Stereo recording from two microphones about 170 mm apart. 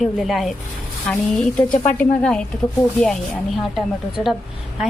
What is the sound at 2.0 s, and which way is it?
Speech, 5° left (ahead or behind).